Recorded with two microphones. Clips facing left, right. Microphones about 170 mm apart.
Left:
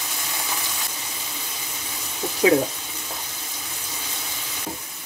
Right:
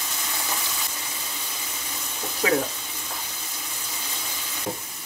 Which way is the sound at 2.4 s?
15° left (ahead or behind).